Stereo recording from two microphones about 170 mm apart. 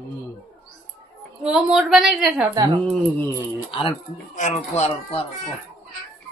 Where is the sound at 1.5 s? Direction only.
Centre (ahead or behind).